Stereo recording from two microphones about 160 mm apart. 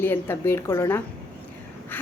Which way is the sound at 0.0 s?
15° left (ahead or behind).